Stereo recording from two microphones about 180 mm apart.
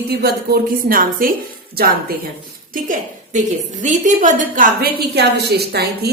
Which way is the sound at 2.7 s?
50° right (ahead or behind).